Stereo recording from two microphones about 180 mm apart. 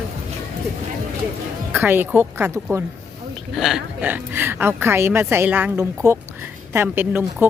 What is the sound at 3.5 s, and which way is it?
Speech, centre (ahead or behind).